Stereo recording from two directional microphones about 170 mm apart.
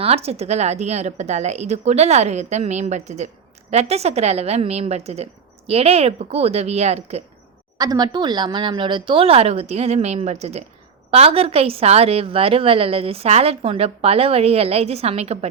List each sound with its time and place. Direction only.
0.0 s a woman's voice: 35° right (ahead or behind)
7.8 s a woman's voice: 25° right (ahead or behind); by 15.4 s 40° right (ahead or behind)